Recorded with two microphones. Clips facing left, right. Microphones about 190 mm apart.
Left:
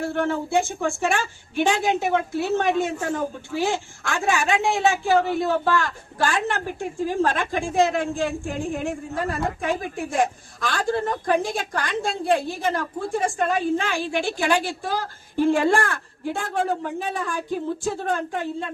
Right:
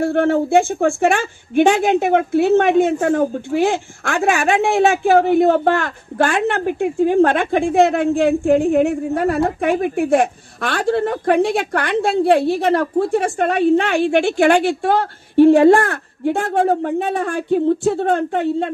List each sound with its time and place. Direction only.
0.0 s a woman's voice: 55° right (ahead or behind)